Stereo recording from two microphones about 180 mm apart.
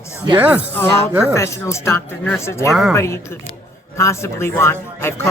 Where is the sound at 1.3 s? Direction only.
15° left (ahead or behind).